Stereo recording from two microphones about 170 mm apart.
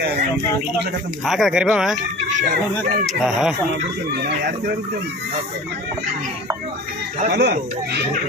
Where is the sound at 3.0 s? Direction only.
5° right (ahead or behind).